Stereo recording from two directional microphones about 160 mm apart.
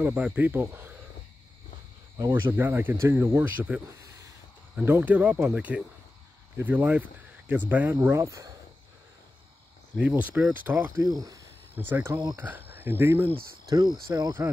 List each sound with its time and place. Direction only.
0.0 s speech: 10° right (ahead or behind)
2.1 s speech: 15° right (ahead or behind)
9.9 s speech: 10° right (ahead or behind)